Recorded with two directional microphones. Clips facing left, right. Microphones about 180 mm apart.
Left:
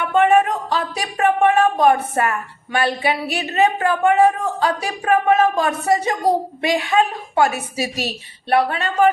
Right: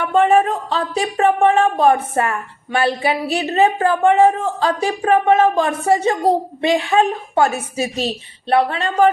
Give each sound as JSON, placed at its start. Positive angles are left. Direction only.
{"t": 0.1, "sound": "a woman's voice", "side_deg": -35}